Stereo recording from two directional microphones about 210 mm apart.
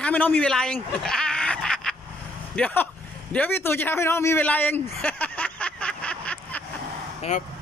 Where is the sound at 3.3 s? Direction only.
10° left (ahead or behind).